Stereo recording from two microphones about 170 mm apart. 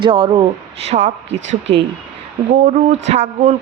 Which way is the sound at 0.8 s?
40° right (ahead or behind).